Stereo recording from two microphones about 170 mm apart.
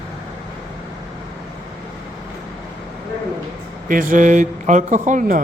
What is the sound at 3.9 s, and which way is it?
Speech, 50° right (ahead or behind).